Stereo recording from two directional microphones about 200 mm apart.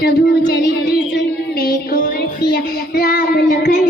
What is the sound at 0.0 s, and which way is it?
Child singing, 55° left (ahead or behind).